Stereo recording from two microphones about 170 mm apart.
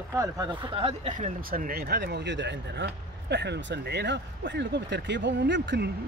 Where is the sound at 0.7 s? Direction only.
40° right (ahead or behind).